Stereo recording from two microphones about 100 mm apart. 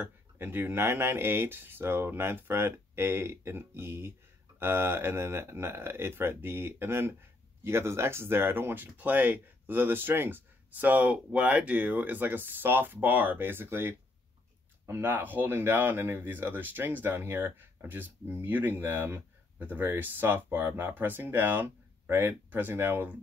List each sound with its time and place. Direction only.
0.0 s speech: 20° right (ahead or behind)